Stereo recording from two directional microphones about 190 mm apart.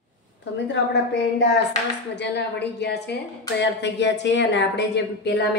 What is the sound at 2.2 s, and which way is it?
A woman's voice, 65° left (ahead or behind).